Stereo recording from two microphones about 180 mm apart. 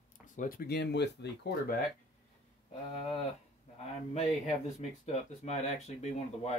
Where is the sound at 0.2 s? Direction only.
50° left (ahead or behind); by 1.8 s 65° left (ahead or behind).